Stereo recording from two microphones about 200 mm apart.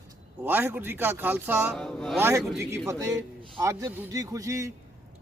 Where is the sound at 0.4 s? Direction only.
10° right (ahead or behind).